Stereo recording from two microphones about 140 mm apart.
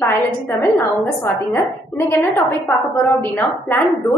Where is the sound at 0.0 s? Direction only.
20° left (ahead or behind).